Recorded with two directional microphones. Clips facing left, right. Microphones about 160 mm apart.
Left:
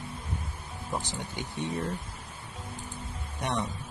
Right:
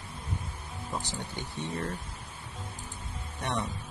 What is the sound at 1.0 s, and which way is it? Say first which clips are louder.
Speech: left 1 dB; 15° left (ahead or behind).